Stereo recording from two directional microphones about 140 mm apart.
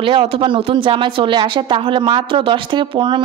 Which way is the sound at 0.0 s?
40° right (ahead or behind).